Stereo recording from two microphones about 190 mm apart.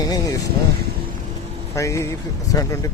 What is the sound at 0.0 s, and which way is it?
Vehicle, 20° left (ahead or behind).